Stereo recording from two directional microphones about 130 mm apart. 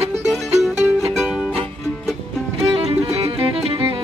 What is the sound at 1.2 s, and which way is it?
Music, 5° right (ahead or behind).